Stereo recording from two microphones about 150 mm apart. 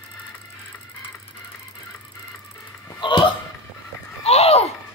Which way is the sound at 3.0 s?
30° left (ahead or behind).